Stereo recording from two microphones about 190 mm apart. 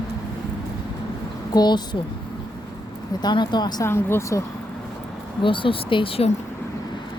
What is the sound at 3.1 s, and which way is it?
Speech, 20° left (ahead or behind).